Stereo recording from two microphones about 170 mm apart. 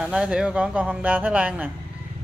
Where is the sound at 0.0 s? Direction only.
5° right (ahead or behind).